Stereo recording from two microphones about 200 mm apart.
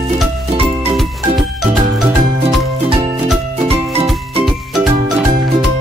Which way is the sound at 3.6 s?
30° right (ahead or behind).